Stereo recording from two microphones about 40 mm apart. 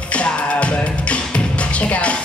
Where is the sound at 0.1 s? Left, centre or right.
Left.